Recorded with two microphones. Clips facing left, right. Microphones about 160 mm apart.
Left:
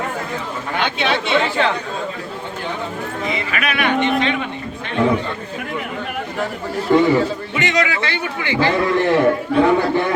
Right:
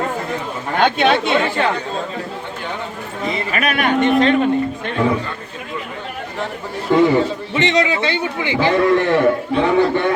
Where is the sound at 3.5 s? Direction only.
40° right (ahead or behind).